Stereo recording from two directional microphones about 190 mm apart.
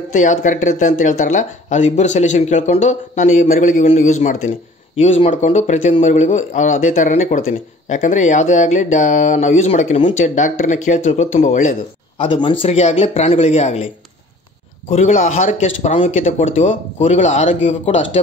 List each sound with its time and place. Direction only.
0.1 s a man's voice: 40° left (ahead or behind)
12.2 s a man's voice: 25° left (ahead or behind)
14.9 s a man's voice: 35° left (ahead or behind)